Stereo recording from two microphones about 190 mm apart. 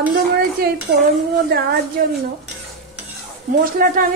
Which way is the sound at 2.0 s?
45° right (ahead or behind).